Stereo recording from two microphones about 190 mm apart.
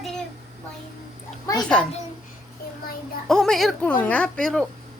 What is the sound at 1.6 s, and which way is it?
Speech, 5° left (ahead or behind).